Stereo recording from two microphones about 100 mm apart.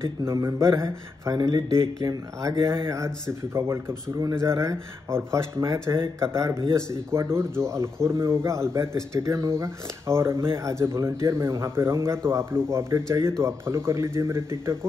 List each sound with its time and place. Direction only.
0.0 s speech: 30° right (ahead or behind)
2.9 s speech: 30° right (ahead or behind)